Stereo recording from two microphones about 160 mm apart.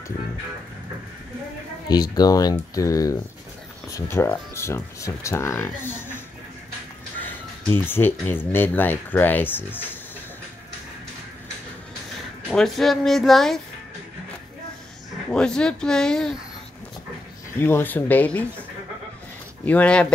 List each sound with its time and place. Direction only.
1.9 s speech: 25° left (ahead or behind)
7.2 s a sound: 10° left (ahead or behind)
8.5 s speech: 10° left (ahead or behind)
12.5 s speech: centre (ahead or behind)
15.3 s speech: 5° left (ahead or behind)
17.6 s speech: 15° left (ahead or behind)
19.6 s speech: 10° left (ahead or behind)